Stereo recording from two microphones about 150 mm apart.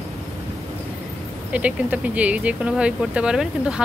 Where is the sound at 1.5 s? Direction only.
10° right (ahead or behind).